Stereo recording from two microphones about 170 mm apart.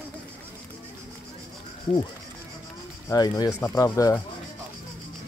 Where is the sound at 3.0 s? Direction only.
20° left (ahead or behind).